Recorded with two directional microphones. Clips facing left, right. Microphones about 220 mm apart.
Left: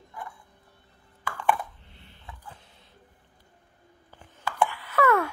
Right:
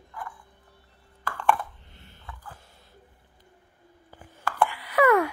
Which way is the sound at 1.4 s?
Centre (ahead or behind).